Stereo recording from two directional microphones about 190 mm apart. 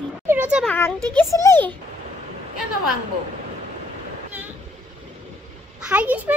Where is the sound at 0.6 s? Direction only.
10° left (ahead or behind).